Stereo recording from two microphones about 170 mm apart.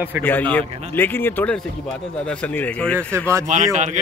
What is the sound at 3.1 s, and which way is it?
Speech, 15° right (ahead or behind).